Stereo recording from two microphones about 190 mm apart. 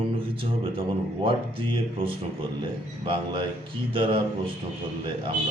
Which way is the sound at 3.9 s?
30° right (ahead or behind).